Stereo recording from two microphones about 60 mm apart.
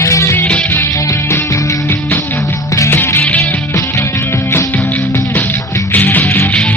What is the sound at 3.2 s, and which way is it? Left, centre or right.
Music, left.